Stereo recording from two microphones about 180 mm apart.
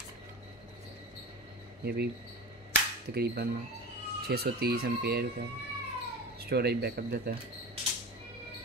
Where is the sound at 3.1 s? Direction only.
60° right (ahead or behind).